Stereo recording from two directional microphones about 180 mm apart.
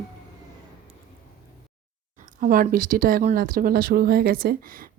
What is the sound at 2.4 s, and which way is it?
A woman's voice, 50° right (ahead or behind).